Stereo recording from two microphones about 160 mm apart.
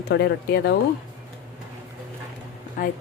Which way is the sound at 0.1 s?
90° left.